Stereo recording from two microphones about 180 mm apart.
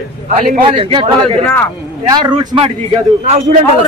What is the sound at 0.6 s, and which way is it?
A man's voice, 30° right (ahead or behind).